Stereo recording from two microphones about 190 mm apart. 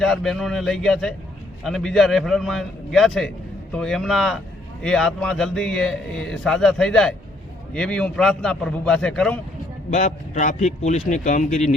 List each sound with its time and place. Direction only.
0.0 s a man's voice: centre (ahead or behind)
9.9 s speech: 40° left (ahead or behind)